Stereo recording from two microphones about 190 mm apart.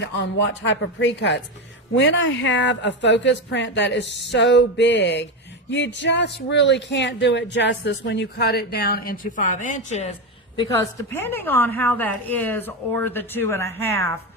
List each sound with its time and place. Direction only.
0.0 s speech: 70° left (ahead or behind); by 10.2 s 35° left (ahead or behind)
10.6 s a woman's voice: 15° left (ahead or behind)